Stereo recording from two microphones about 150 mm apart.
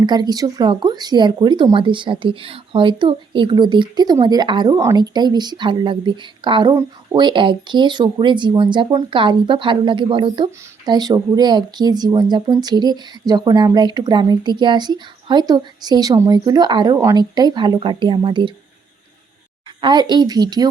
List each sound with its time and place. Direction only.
0.0 s speech: 30° right (ahead or behind)
19.8 s speech: 30° right (ahead or behind)